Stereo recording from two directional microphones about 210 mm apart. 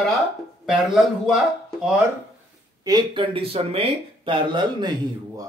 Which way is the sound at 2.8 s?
20° right (ahead or behind).